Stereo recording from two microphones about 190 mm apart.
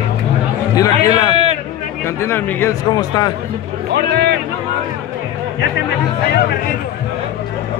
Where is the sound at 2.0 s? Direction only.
15° left (ahead or behind).